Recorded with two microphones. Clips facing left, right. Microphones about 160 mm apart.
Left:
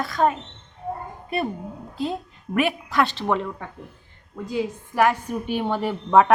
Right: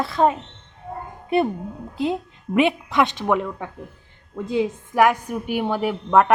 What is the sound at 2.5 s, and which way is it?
A woman's voice, 20° right (ahead or behind).